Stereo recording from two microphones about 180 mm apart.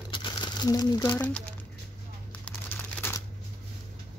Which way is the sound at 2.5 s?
10° left (ahead or behind).